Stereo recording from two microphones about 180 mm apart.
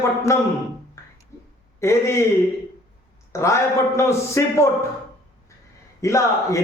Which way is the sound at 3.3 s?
15° left (ahead or behind).